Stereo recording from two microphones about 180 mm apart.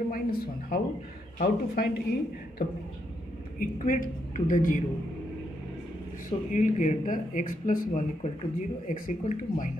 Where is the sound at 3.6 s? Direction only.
50° left (ahead or behind).